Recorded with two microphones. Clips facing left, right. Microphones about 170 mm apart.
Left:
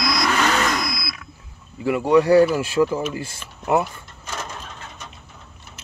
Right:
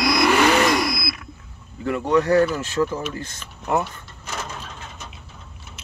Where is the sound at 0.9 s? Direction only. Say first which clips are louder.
Right 4 dB; 60° right (ahead or behind).